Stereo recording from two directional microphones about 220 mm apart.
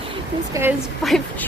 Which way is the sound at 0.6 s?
15° right (ahead or behind).